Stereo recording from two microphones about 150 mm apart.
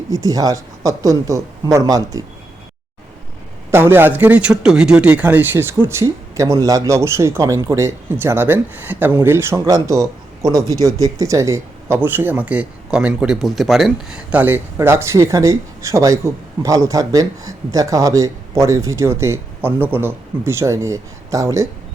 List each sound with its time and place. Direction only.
0.1 s speech: 25° right (ahead or behind)
3.7 s a man's voice: 15° right (ahead or behind)